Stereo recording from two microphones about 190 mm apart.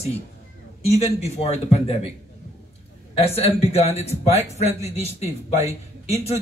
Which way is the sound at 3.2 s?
30° left (ahead or behind).